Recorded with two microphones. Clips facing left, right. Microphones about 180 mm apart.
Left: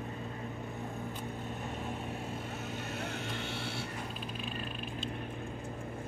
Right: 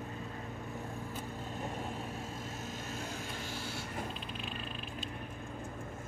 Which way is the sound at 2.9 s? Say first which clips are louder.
Left 3 dB; 65° left (ahead or behind).